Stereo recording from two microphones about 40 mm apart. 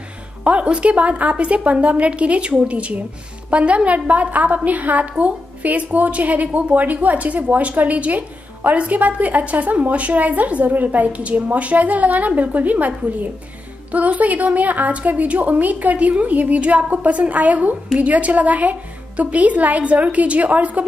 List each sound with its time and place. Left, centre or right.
0.4 s a woman's voice: right